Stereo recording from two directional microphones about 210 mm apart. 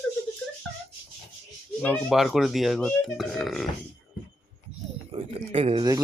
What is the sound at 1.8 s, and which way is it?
Speech, 5° left (ahead or behind).